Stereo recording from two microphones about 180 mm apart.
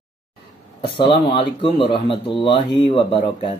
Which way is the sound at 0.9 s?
30° left (ahead or behind).